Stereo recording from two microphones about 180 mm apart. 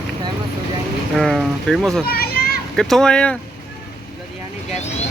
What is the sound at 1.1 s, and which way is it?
Speech, centre (ahead or behind).